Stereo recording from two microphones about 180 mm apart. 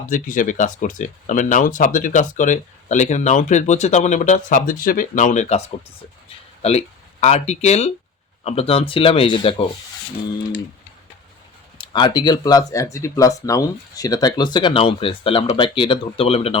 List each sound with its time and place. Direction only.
0.1 s speech: 45° left (ahead or behind)
6.2 s a sound: 35° left (ahead or behind)
8.4 s speech: 35° left (ahead or behind)
11.8 s speech: 25° left (ahead or behind)